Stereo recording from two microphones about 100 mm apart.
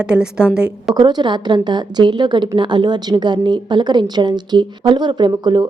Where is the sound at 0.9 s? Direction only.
45° right (ahead or behind).